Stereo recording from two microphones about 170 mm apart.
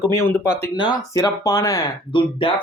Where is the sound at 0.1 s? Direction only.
15° left (ahead or behind).